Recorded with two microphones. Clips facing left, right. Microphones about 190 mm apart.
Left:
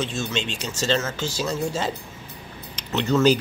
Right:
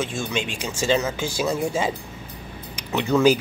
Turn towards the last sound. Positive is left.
turn(degrees=-10)  # may be behind; listen again after turning